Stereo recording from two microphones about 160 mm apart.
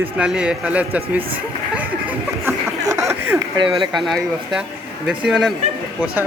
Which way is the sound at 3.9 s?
Centre (ahead or behind).